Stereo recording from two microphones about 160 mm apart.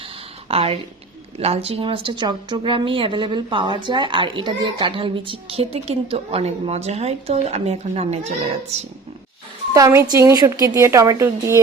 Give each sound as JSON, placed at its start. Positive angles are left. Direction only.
{"t": 0.4, "sound": "a woman's voice", "side_deg": -40}
{"t": 9.7, "sound": "a woman's voice", "side_deg": -20}